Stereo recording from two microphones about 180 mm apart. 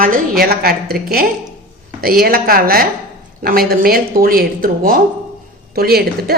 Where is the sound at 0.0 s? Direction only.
55° right (ahead or behind).